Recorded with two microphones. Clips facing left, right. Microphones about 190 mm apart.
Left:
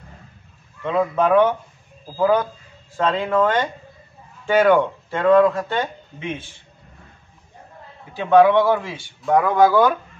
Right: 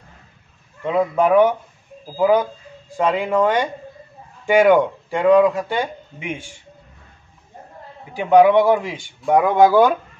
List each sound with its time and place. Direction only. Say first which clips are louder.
0.8 s speech: right 2 dB; 15° right (ahead or behind)
8.1 s speech: right 1 dB; 15° right (ahead or behind)